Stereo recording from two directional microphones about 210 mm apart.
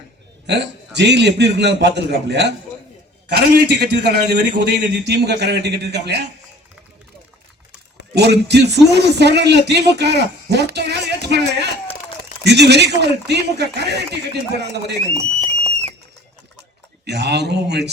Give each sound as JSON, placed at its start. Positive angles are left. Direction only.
{"t": 0.4, "sound": "a man's voice", "side_deg": -55}
{"t": 8.1, "sound": "a man's voice", "side_deg": -50}
{"t": 17.1, "sound": "a man's voice", "side_deg": -55}